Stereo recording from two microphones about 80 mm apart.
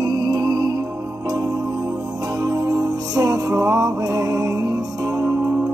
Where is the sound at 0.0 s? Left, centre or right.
Right.